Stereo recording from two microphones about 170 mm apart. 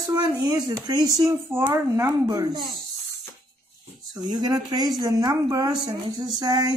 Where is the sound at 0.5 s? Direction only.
20° right (ahead or behind).